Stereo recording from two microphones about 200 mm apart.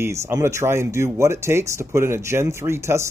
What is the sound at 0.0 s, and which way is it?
A man's voice, 15° right (ahead or behind).